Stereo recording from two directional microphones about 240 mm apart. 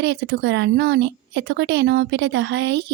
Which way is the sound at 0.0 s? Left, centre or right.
Right.